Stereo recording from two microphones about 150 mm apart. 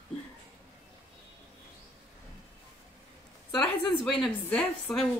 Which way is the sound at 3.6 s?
5° left (ahead or behind).